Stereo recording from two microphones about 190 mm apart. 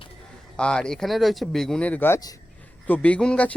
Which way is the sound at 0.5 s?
5° left (ahead or behind).